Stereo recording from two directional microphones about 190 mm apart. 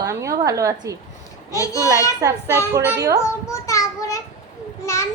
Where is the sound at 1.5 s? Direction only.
15° left (ahead or behind).